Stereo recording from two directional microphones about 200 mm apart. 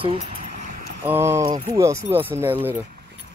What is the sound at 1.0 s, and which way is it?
Speech, 10° right (ahead or behind).